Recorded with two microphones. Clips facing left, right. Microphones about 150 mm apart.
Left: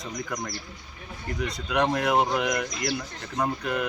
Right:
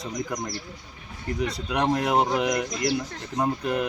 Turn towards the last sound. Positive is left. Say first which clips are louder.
# right 2 dB
turn(degrees=-30)  # may be behind; listen again after turning